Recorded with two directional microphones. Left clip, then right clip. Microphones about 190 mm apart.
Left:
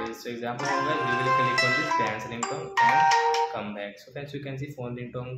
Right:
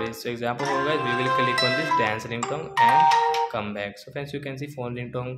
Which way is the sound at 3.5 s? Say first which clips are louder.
Right 4 dB; 40° right (ahead or behind).